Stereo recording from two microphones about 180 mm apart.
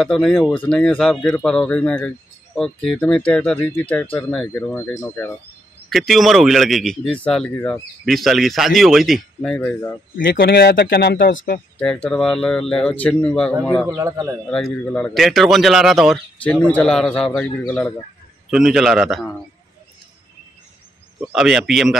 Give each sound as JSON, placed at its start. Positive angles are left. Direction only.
{"t": 0.0, "sound": "a man's voice", "side_deg": 0}
{"t": 5.9, "sound": "a man's voice", "side_deg": 0}
{"t": 10.1, "sound": "a man's voice", "side_deg": 55}
{"t": 11.8, "sound": "a man's voice", "side_deg": 5}
{"t": 13.8, "sound": "a man's voice", "side_deg": -20}
{"t": 14.5, "sound": "a man's voice", "side_deg": 5}
{"t": 21.3, "sound": "a man's voice", "side_deg": -5}